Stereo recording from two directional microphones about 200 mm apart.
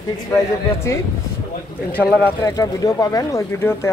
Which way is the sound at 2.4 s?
15° left (ahead or behind).